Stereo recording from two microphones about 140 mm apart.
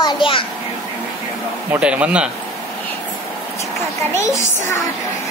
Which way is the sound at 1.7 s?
10° right (ahead or behind).